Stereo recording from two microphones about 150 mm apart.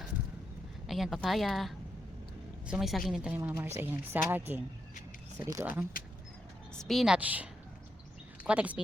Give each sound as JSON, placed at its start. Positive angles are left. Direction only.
{"t": 0.9, "sound": "a woman's voice", "side_deg": 0}
{"t": 6.7, "sound": "a woman's voice", "side_deg": 0}
{"t": 8.4, "sound": "a woman's voice", "side_deg": -10}